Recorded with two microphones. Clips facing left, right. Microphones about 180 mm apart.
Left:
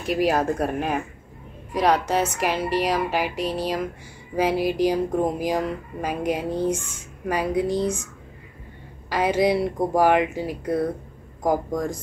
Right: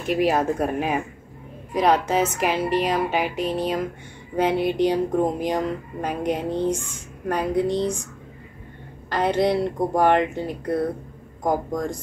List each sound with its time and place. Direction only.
0.0 s speech: centre (ahead or behind)
9.1 s speech: 5° left (ahead or behind)